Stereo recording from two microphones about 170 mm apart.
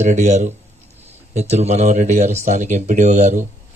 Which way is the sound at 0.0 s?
45° right (ahead or behind).